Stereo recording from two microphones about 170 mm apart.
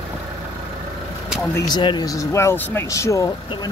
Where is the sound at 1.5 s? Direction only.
25° left (ahead or behind).